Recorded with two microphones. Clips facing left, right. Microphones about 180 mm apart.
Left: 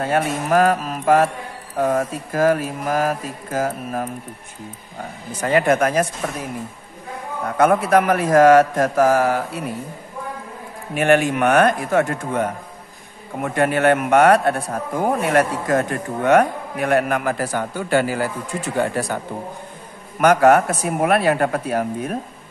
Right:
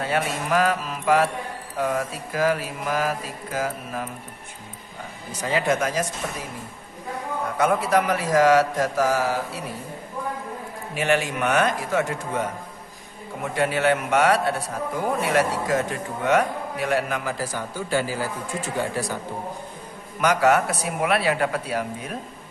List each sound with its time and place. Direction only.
0.0 s mantra: 45° left (ahead or behind)
5.4 s a man's voice: 55° left (ahead or behind)
7.5 s mantra: 55° left (ahead or behind)
11.0 s a man's voice: 55° left (ahead or behind)
20.2 s mantra: 50° left (ahead or behind)